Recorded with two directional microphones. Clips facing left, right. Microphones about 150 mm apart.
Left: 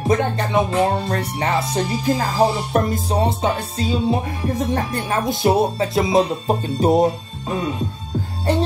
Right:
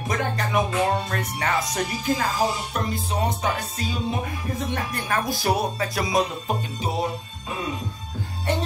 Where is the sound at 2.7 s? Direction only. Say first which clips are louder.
Left 8 dB; 45° left (ahead or behind).